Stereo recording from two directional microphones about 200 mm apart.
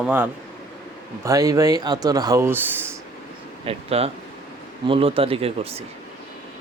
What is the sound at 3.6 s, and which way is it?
Speech, 30° right (ahead or behind).